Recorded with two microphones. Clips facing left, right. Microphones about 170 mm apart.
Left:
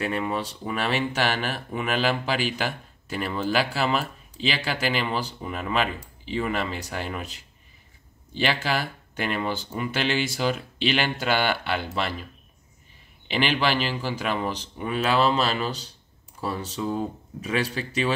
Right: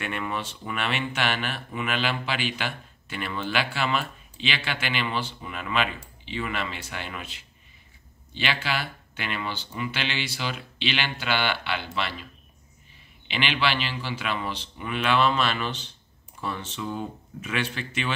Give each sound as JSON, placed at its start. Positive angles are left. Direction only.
{"t": 0.0, "sound": "speech", "side_deg": 30}
{"t": 13.3, "sound": "speech", "side_deg": 40}